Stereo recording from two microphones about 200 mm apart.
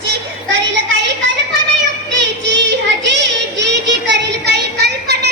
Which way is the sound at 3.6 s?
60° right (ahead or behind).